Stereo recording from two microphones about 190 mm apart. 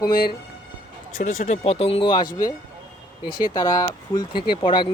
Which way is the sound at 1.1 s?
40° left (ahead or behind).